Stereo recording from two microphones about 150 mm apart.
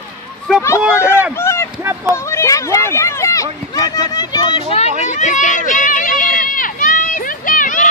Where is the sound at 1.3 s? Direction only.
15° left (ahead or behind).